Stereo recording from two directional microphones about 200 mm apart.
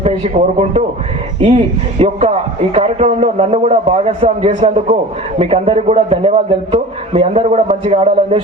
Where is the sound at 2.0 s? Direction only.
30° right (ahead or behind).